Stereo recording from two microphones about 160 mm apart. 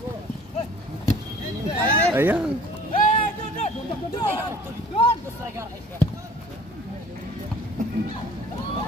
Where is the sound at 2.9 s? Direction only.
55° left (ahead or behind).